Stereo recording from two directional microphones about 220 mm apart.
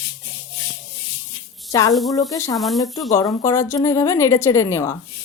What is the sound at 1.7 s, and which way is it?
A woman's voice, 15° left (ahead or behind).